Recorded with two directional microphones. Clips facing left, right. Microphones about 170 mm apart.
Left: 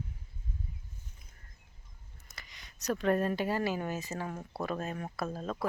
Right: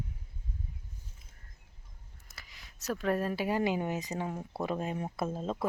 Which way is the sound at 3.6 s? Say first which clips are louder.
Right 2 dB; 20° right (ahead or behind).